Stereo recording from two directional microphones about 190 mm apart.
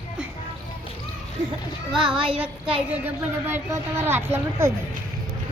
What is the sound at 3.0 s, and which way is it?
Speech, 10° right (ahead or behind).